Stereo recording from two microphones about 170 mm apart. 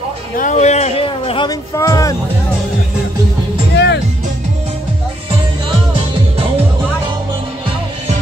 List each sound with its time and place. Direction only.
0.4 s a sound: 45° left (ahead or behind)
1.8 s speech: 20° left (ahead or behind)
3.7 s music: 90° left